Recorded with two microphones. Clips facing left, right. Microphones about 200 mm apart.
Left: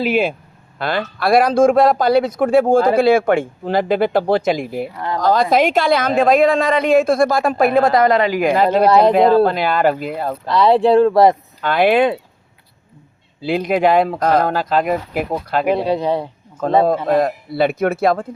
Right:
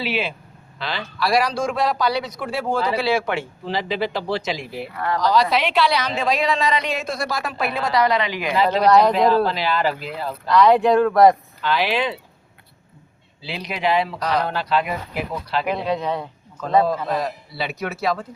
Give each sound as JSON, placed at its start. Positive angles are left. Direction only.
{"t": 0.0, "sound": "speech", "side_deg": 50}
{"t": 4.9, "sound": "speech", "side_deg": 20}
{"t": 5.2, "sound": "speech", "side_deg": 50}
{"t": 10.5, "sound": "speech", "side_deg": 30}
{"t": 11.6, "sound": "speech", "side_deg": 55}
{"t": 13.4, "sound": "speech", "side_deg": 50}
{"t": 15.7, "sound": "speech", "side_deg": 35}
{"t": 16.6, "sound": "speech", "side_deg": 50}